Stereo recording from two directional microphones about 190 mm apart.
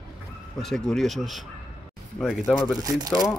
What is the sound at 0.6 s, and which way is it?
Speech, centre (ahead or behind).